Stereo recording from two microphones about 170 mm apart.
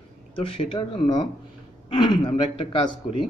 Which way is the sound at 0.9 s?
30° left (ahead or behind).